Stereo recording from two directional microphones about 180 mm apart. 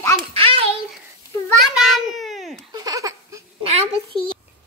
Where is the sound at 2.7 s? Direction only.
20° right (ahead or behind).